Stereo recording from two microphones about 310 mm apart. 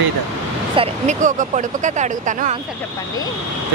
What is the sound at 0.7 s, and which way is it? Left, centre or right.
Speech, right.